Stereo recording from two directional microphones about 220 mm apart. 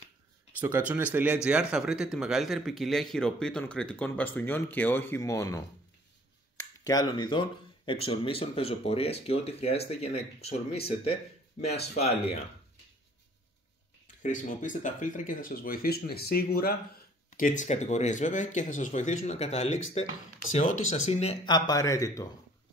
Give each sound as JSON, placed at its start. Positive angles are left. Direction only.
{"t": 0.6, "sound": "speech", "side_deg": -10}
{"t": 14.2, "sound": "speech", "side_deg": 35}